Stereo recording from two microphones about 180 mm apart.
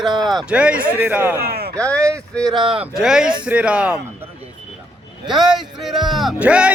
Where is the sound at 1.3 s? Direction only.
60° right (ahead or behind).